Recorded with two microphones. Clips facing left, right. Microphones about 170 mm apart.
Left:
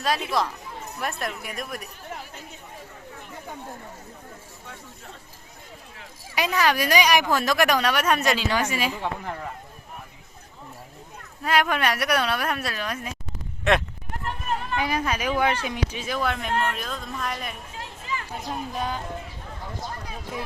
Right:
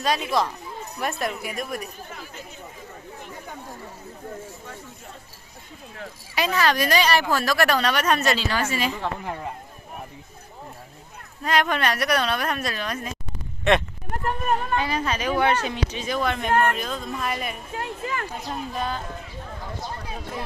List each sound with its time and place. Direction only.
0.0 s a woman's voice: centre (ahead or behind)
6.3 s a woman's voice: 15° left (ahead or behind)
11.4 s a woman's voice: 5° left (ahead or behind)
14.1 s a sound: 50° right (ahead or behind)
14.8 s a woman's voice: 10° left (ahead or behind)
16.5 s a man's voice: 55° right (ahead or behind)
16.7 s a woman's voice: centre (ahead or behind)
17.7 s speech: 60° right (ahead or behind)
18.4 s a woman's voice: 10° left (ahead or behind)